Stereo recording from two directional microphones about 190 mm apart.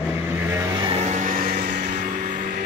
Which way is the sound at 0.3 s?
10° right (ahead or behind).